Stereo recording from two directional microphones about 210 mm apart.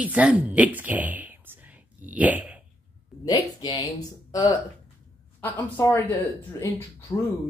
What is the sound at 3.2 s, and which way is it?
Speech, 20° left (ahead or behind).